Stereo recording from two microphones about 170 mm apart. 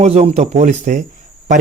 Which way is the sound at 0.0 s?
35° right (ahead or behind).